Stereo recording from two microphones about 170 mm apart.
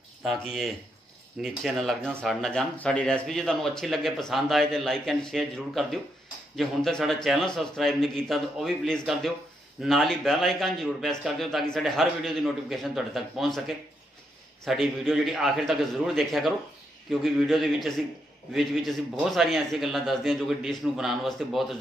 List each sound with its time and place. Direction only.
0.2 s speech: centre (ahead or behind)